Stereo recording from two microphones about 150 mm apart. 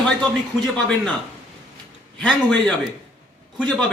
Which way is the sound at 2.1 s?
5° left (ahead or behind).